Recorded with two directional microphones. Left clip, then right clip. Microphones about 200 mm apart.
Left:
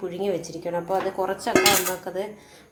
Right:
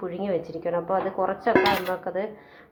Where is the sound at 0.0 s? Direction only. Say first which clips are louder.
Left 1 dB; 5° right (ahead or behind).